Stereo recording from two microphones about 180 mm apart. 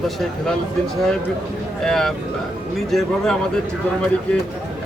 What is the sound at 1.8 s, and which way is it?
Speech, centre (ahead or behind).